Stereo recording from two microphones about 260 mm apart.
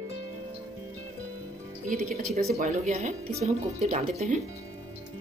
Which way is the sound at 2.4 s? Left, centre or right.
Right.